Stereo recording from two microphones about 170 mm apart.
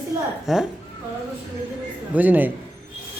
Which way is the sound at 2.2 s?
10° right (ahead or behind).